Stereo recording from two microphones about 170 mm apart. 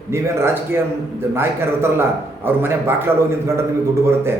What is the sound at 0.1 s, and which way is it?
A man's voice, 15° right (ahead or behind).